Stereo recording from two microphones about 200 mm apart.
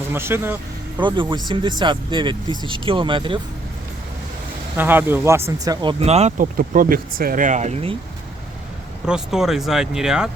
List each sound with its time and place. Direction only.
0.1 s speech: 10° right (ahead or behind)
1.0 s speech: 25° right (ahead or behind)
4.8 s speech: 10° right (ahead or behind); by 7.9 s 30° right (ahead or behind)
9.0 s speech: 5° right (ahead or behind)